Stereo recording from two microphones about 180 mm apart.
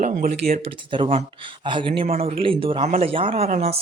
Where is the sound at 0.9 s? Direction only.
30° right (ahead or behind).